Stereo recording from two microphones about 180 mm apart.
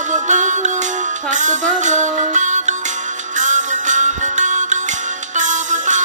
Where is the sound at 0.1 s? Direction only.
45° right (ahead or behind).